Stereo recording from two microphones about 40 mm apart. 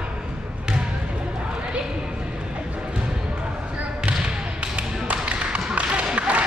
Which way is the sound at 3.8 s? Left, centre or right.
Right.